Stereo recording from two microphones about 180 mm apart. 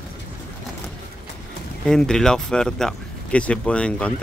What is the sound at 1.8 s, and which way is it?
Speech, 5° left (ahead or behind).